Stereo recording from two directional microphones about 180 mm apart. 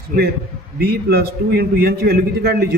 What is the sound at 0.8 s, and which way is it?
A man's voice, 60° right (ahead or behind).